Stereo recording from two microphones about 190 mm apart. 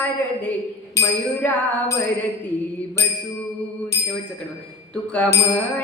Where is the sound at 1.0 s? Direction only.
15° left (ahead or behind).